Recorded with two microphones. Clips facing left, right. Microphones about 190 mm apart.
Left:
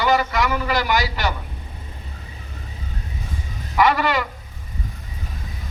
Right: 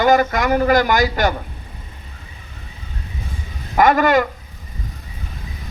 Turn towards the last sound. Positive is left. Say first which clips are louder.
# right 5 dB
turn(degrees=-45)  # may be behind; listen again after turning